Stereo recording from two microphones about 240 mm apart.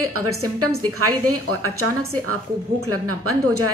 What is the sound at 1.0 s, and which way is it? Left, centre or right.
Speech, right.